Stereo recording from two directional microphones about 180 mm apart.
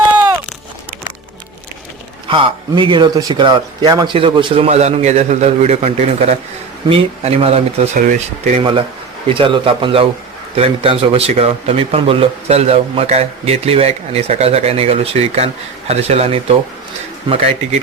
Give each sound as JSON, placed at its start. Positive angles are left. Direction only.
{"t": 2.3, "sound": "a man's voice", "side_deg": -30}